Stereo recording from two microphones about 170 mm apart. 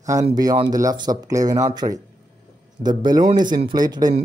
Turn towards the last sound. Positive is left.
turn(degrees=-25)  # may be behind; listen again after turning